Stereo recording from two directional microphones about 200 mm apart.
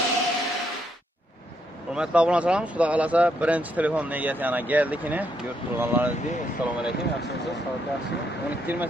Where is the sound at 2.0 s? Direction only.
5° right (ahead or behind).